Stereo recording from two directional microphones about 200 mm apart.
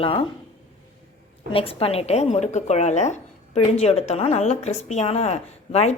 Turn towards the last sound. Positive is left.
turn(degrees=30)  # may be behind; listen again after turning